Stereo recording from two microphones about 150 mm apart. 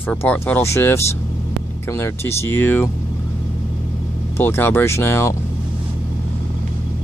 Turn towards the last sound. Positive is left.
turn(degrees=15)  # may be behind; listen again after turning